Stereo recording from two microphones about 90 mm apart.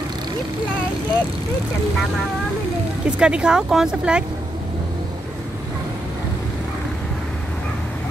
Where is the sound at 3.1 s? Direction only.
10° right (ahead or behind).